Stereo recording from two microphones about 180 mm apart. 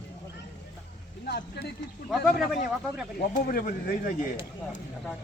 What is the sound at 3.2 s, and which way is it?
Speech, 50° left (ahead or behind).